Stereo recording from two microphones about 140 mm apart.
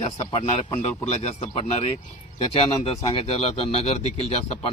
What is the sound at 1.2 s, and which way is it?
Speech, 50° left (ahead or behind).